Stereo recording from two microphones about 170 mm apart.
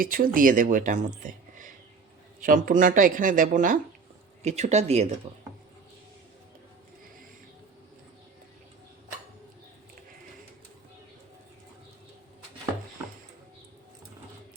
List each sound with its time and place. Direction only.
0.0 s speech: 55° right (ahead or behind)
4.4 s speech: 40° right (ahead or behind)